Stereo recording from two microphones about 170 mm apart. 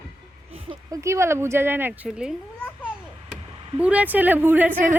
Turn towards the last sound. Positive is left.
turn(degrees=-10)  # may be behind; listen again after turning